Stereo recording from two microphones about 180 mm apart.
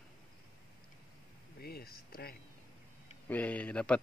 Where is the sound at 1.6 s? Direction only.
60° left (ahead or behind).